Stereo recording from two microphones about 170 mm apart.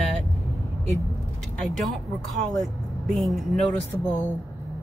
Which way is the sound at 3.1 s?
Centre (ahead or behind).